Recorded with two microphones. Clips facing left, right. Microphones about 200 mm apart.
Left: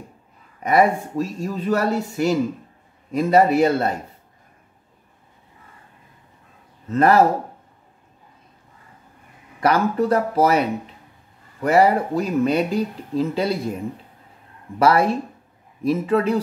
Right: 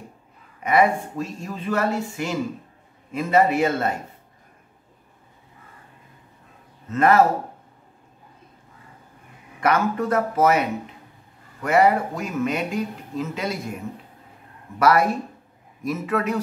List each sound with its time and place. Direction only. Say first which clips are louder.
0.6 s speech: left 2 dB; 35° left (ahead or behind)
6.9 s speech: left 2 dB; 35° left (ahead or behind)
9.6 s speech: left 3 dB; 35° left (ahead or behind)
11.6 s speech: left 2 dB; 35° left (ahead or behind)
14.8 s a man's voice: left 2 dB; 30° left (ahead or behind)